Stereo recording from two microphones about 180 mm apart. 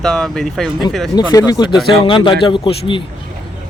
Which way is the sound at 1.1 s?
20° left (ahead or behind).